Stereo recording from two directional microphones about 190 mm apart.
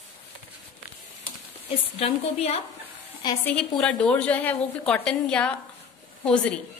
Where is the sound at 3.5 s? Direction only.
5° left (ahead or behind).